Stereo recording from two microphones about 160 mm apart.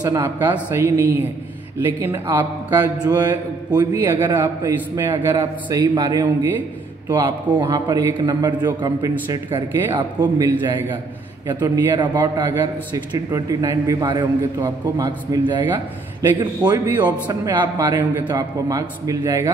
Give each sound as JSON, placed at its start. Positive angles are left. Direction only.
{"t": 0.0, "sound": "a man's voice", "side_deg": -25}
{"t": 7.1, "sound": "a man's voice", "side_deg": -15}